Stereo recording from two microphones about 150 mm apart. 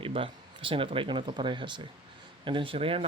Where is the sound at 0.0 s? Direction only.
35° right (ahead or behind).